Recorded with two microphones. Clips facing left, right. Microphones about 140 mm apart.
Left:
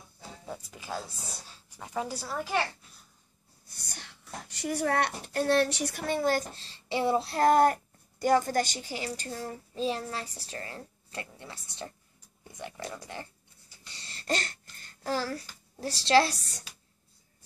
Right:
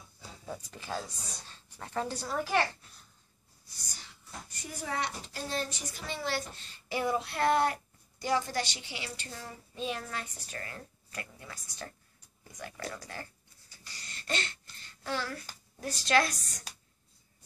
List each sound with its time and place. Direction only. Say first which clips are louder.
0.5 s a woman's voice: even; 10° left (ahead or behind)
3.6 s a child's voice: left 4 dB; 60° left (ahead or behind); by 13.3 s 20° left (ahead or behind)
13.8 s a sound: left 6 dB; 30° left (ahead or behind)